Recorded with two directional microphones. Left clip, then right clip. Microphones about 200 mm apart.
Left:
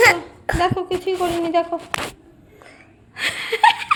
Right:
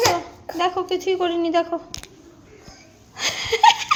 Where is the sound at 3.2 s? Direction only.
15° left (ahead or behind).